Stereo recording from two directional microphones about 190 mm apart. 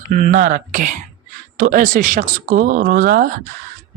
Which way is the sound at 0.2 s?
40° right (ahead or behind).